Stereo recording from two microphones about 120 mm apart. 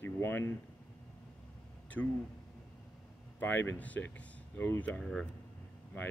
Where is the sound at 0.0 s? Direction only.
20° left (ahead or behind).